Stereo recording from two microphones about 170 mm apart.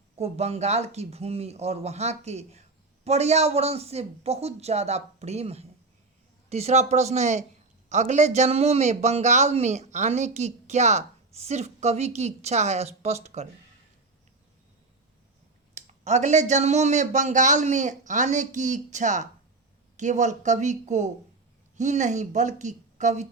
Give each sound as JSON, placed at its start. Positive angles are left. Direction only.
{"t": 0.2, "sound": "a man's voice", "side_deg": -40}
{"t": 15.7, "sound": "speech", "side_deg": -45}